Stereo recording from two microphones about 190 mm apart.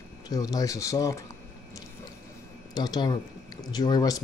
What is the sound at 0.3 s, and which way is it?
Speech, 20° left (ahead or behind).